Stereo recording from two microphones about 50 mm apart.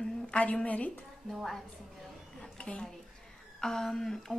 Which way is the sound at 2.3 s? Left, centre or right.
Centre.